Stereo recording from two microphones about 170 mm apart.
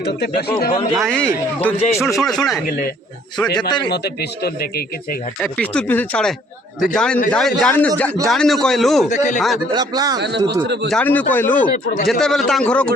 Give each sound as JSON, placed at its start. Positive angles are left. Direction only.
{"t": 0.0, "sound": "speech", "side_deg": 70}
{"t": 1.0, "sound": "a man's voice", "side_deg": 5}
{"t": 2.0, "sound": "a man's voice", "side_deg": 0}
{"t": 3.4, "sound": "speech", "side_deg": 25}
{"t": 3.8, "sound": "speech", "side_deg": 75}
{"t": 5.4, "sound": "a man's voice", "side_deg": 5}
{"t": 9.0, "sound": "speech", "side_deg": 45}
{"t": 9.7, "sound": "a man's voice", "side_deg": -20}
{"t": 10.2, "sound": "speech", "side_deg": -85}
{"t": 10.9, "sound": "a man's voice", "side_deg": 10}